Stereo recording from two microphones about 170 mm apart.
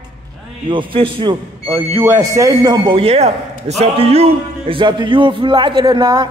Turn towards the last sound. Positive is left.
turn(degrees=-25)  # may be behind; listen again after turning